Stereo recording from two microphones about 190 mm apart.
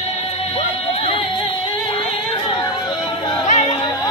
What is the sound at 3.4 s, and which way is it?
Music, 35° left (ahead or behind).